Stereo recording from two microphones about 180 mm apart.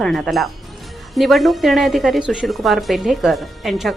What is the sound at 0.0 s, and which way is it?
A woman's voice, centre (ahead or behind).